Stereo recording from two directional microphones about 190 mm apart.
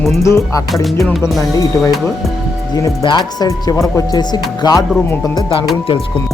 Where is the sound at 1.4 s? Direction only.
20° left (ahead or behind).